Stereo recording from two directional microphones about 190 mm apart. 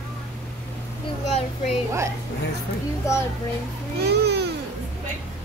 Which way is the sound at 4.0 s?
60° right (ahead or behind).